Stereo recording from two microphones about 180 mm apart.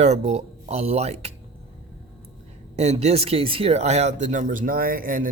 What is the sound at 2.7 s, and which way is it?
Speech, 35° right (ahead or behind).